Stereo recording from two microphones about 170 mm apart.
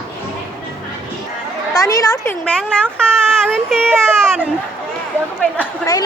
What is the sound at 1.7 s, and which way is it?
Speech, 20° left (ahead or behind).